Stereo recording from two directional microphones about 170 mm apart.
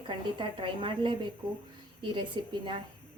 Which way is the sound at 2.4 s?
25° right (ahead or behind).